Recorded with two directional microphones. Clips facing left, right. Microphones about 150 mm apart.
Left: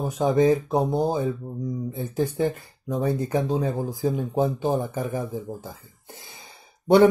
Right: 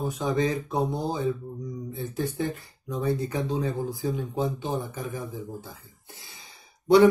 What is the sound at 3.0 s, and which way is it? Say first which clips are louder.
Speech: left 3 dB; 40° left (ahead or behind).